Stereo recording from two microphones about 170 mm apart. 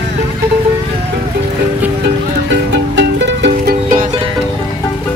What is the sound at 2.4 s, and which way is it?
Music, 90° right.